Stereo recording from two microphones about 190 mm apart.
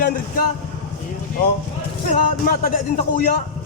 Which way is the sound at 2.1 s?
50° left (ahead or behind).